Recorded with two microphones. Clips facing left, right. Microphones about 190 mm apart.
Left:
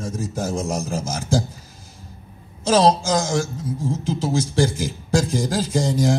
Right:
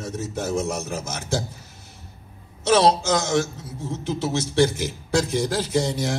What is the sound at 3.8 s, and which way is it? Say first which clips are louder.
Speech: left 2 dB; 65° right (ahead or behind).